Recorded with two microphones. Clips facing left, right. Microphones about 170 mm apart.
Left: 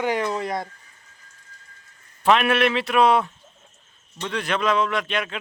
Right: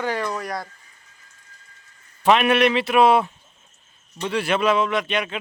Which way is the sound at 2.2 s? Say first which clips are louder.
Right 2 dB; 5° right (ahead or behind).